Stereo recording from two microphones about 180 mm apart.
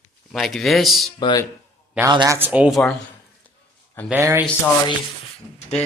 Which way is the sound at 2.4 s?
10° right (ahead or behind).